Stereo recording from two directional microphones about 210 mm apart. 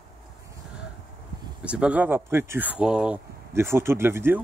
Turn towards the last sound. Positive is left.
turn(degrees=-10)  # may be behind; listen again after turning